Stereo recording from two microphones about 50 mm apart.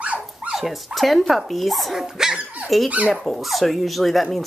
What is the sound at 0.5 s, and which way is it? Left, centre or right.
Speech, centre.